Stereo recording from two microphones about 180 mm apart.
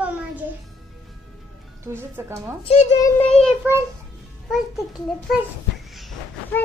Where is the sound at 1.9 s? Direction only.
15° right (ahead or behind).